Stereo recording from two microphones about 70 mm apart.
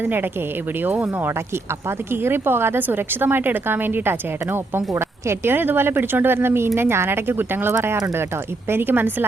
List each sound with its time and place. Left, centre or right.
0.0 s speech: right
8.7 s speech: right